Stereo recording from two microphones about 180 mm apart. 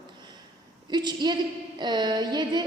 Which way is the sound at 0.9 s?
25° right (ahead or behind).